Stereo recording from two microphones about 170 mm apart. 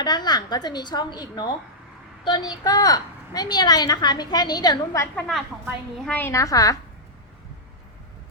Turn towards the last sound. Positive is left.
turn(degrees=20)  # may be behind; listen again after turning